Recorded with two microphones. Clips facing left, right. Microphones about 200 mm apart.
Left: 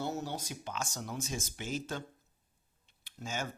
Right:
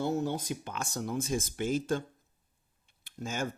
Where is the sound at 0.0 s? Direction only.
50° right (ahead or behind).